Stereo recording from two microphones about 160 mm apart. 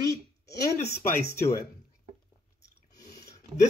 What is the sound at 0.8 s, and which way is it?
Speech, 90° left.